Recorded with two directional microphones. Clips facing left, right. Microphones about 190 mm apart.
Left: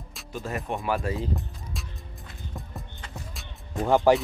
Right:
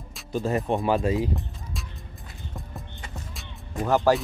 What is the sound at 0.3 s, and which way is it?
Speech, 30° right (ahead or behind).